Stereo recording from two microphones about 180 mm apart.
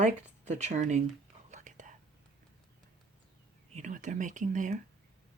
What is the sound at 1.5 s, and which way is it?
Whispering, 45° right (ahead or behind).